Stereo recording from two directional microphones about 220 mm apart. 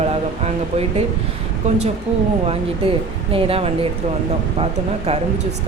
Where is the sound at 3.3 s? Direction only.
25° right (ahead or behind).